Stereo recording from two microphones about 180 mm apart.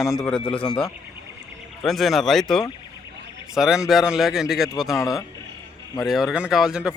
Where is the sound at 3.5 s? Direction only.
Centre (ahead or behind).